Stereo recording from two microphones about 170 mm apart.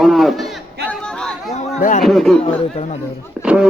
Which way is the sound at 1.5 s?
45° left (ahead or behind).